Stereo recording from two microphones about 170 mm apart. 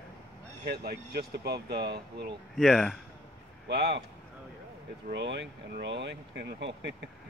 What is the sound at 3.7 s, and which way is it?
Speech, 75° right (ahead or behind).